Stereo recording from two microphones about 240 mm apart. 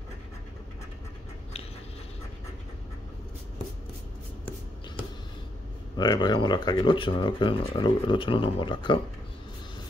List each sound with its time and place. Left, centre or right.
5.9 s speech: centre